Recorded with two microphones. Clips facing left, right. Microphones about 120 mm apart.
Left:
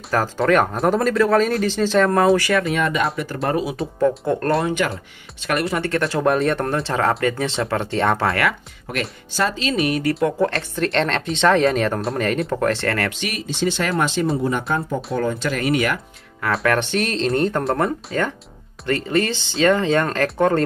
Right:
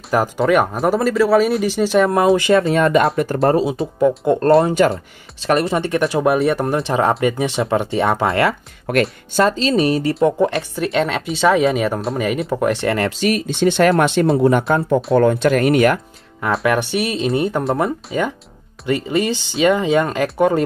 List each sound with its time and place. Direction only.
0.4 s speech: 5° right (ahead or behind)
2.3 s speech: 25° right (ahead or behind)
5.9 s speech: 15° right (ahead or behind)
8.3 s speech: 30° right (ahead or behind)
8.9 s speech: 60° right (ahead or behind)
9.4 s speech: 35° right (ahead or behind)
10.2 s speech: 15° right (ahead or behind)
13.2 s speech: 50° right (ahead or behind); by 14.6 s 70° right (ahead or behind)
15.1 s speech: 55° right (ahead or behind)
16.6 s speech: 10° right (ahead or behind)